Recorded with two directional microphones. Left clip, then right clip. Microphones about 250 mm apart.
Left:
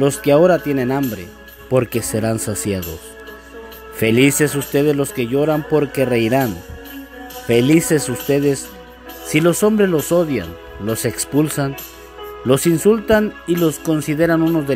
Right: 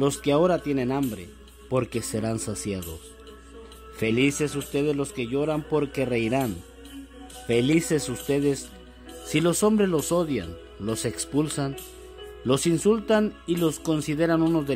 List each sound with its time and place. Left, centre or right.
0.0 s speech: centre
4.0 s speech: centre